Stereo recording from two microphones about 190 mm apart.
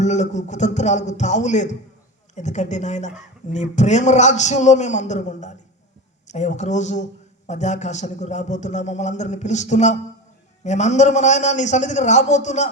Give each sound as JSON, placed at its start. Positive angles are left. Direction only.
{"t": 0.0, "sound": "a man's voice", "side_deg": 40}